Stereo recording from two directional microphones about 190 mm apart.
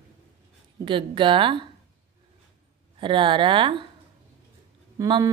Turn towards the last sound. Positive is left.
turn(degrees=-20)  # may be behind; listen again after turning